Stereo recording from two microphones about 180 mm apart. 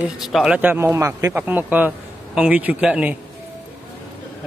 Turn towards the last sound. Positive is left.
turn(degrees=-5)  # may be behind; listen again after turning